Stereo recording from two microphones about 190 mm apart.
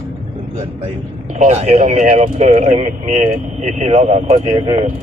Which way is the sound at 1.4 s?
35° right (ahead or behind).